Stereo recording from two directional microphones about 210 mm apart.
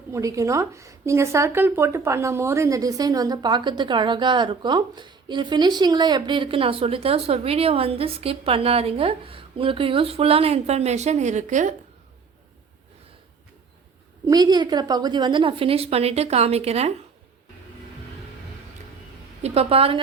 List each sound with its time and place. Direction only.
0.1 s a woman's voice: 15° right (ahead or behind); by 11.7 s 35° right (ahead or behind)
14.3 s a woman's voice: 20° right (ahead or behind)
19.4 s a woman's voice: 30° right (ahead or behind)